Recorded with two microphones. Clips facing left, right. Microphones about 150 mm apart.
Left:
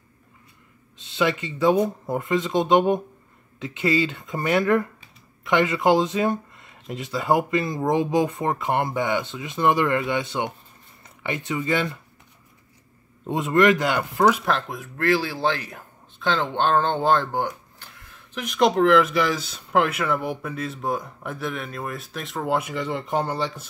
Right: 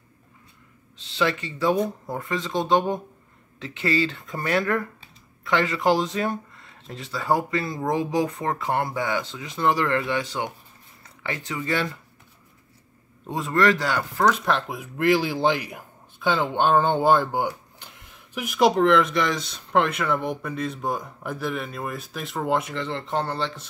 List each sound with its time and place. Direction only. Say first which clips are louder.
1.0 s speech: left 1 dB; 20° left (ahead or behind)
13.3 s speech: left 3 dB; 20° left (ahead or behind)
14.2 s speech: left 2 dB; 5° left (ahead or behind)
14.8 s speech: right 1 dB; 15° right (ahead or behind); by 23.7 s 10° left (ahead or behind)